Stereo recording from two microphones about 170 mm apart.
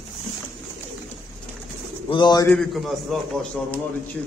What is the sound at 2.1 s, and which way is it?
Speech, 25° left (ahead or behind).